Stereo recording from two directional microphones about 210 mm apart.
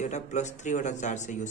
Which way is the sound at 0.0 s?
35° left (ahead or behind).